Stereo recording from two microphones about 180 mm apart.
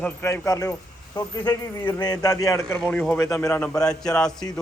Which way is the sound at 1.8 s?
10° left (ahead or behind).